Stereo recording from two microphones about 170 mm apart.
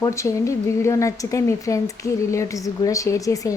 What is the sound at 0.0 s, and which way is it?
A woman's voice, 15° left (ahead or behind).